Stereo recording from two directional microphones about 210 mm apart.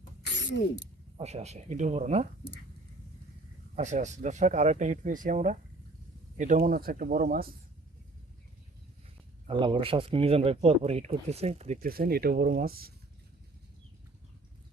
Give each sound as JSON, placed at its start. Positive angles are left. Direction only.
{"t": 0.3, "sound": "a sound", "side_deg": 55}
{"t": 1.2, "sound": "speech", "side_deg": -30}
{"t": 3.8, "sound": "speech", "side_deg": -35}
{"t": 9.5, "sound": "speech", "side_deg": -25}